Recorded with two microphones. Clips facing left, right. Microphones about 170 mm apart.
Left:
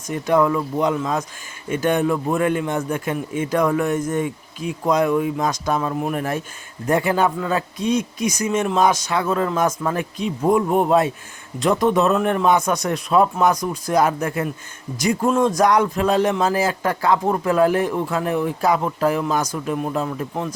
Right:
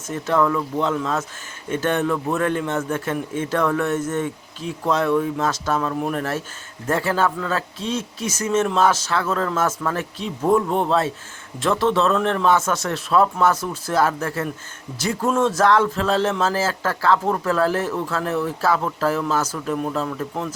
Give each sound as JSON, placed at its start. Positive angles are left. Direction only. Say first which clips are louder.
{"t": 0.1, "sound": "a man's voice", "louder": "left 2 dB", "side_deg": 15}